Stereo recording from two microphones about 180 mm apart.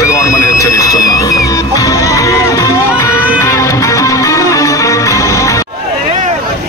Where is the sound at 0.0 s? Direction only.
15° left (ahead or behind).